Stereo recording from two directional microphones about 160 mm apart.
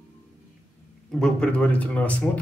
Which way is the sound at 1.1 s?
5° left (ahead or behind).